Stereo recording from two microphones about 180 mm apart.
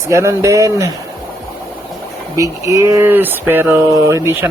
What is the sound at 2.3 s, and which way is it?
Speech, 20° right (ahead or behind).